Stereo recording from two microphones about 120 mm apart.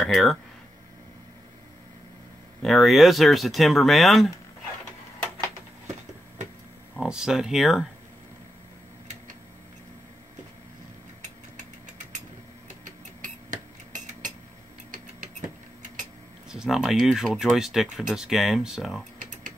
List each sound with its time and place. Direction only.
0.0 s speech: centre (ahead or behind)
2.6 s speech: centre (ahead or behind)
7.0 s speech: 5° right (ahead or behind)
13.2 s a sound: 90° right
16.4 s speech: 5° right (ahead or behind)